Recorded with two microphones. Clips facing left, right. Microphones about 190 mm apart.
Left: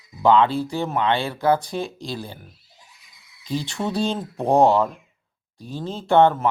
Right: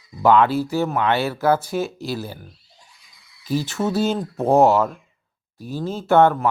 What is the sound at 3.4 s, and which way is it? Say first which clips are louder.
Speech: right 4 dB; 5° right (ahead or behind).